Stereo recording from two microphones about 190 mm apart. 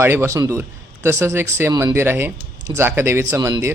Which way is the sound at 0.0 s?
15° right (ahead or behind).